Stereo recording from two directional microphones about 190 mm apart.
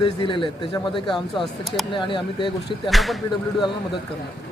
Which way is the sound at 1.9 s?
25° left (ahead or behind).